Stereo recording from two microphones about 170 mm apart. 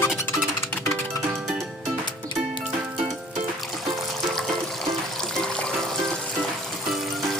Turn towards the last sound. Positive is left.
turn(degrees=5)  # may be behind; listen again after turning